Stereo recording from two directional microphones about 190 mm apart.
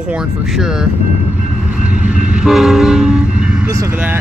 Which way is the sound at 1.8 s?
5° right (ahead or behind).